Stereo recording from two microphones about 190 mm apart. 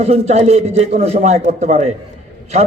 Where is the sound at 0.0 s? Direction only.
35° right (ahead or behind).